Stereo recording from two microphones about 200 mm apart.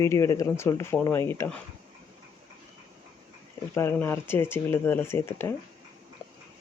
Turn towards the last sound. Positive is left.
turn(degrees=15)  # may be behind; listen again after turning